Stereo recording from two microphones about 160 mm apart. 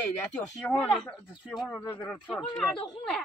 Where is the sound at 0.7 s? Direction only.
5° left (ahead or behind).